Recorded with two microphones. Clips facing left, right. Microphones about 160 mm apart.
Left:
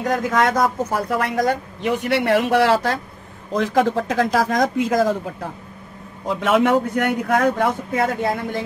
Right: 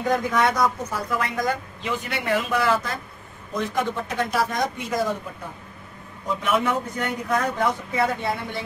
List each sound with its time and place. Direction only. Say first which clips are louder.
0.1 s a man's voice: left 3 dB; 50° left (ahead or behind)